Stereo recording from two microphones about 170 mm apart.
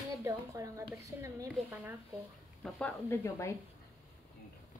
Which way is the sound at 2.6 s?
5° left (ahead or behind).